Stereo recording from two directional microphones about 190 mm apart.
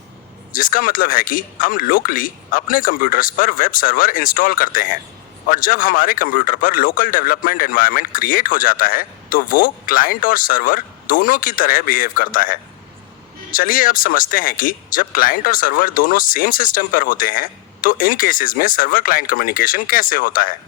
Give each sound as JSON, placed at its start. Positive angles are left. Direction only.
{"t": 0.5, "sound": "a man's voice", "side_deg": 45}